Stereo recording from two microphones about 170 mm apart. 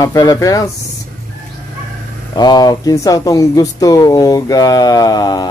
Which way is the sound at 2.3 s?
25° left (ahead or behind).